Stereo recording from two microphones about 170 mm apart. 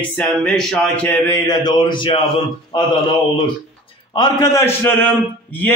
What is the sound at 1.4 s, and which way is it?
Speech, 25° left (ahead or behind).